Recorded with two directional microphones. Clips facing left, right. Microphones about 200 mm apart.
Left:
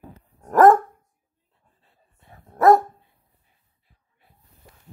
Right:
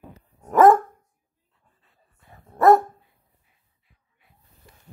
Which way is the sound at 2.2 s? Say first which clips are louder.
Even; centre (ahead or behind).